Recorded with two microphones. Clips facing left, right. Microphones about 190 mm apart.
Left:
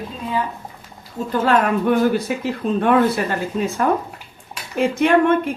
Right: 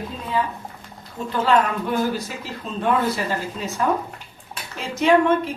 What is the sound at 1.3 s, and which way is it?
A woman's voice, 55° left (ahead or behind).